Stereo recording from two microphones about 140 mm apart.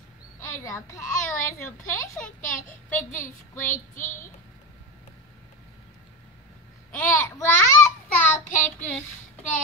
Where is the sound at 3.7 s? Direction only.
70° left (ahead or behind).